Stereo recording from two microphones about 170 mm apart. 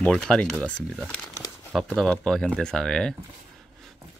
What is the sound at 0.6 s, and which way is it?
Speech, 5° left (ahead or behind).